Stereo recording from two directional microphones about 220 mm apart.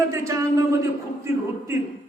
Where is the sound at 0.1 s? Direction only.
15° right (ahead or behind).